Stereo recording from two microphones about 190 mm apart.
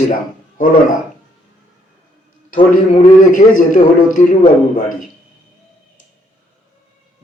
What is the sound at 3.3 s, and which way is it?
A man's voice, 45° left (ahead or behind).